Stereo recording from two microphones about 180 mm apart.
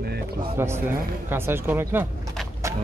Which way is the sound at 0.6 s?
15° right (ahead or behind).